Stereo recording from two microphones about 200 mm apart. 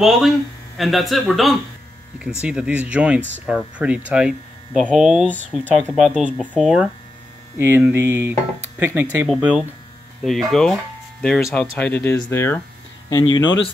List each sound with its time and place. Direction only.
0.0 s speech: centre (ahead or behind); by 13.6 s 20° left (ahead or behind)